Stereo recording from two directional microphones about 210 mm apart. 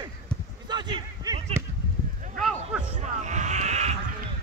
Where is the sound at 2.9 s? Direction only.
35° right (ahead or behind).